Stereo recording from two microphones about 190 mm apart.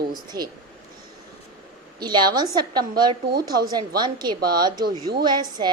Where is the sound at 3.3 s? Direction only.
55° right (ahead or behind).